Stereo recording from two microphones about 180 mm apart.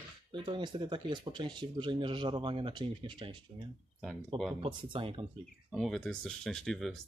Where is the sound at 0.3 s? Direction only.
25° right (ahead or behind).